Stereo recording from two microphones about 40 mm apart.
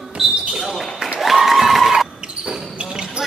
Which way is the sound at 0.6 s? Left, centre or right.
Centre.